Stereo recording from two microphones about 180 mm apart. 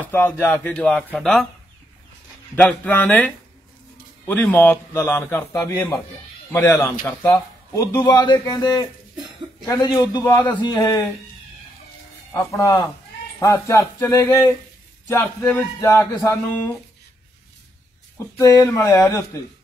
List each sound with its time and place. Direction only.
0.1 s speech: 10° left (ahead or behind)
2.5 s a man's voice: 10° left (ahead or behind)
10.3 s speech: 10° left (ahead or behind)
10.6 s a man's voice: 20° left (ahead or behind)
12.4 s speech: 15° left (ahead or behind)
18.4 s speech: 15° left (ahead or behind)